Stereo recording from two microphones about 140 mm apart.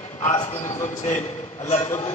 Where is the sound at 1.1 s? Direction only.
60° left (ahead or behind).